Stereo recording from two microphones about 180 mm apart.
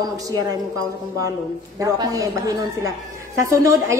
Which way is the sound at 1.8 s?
20° right (ahead or behind).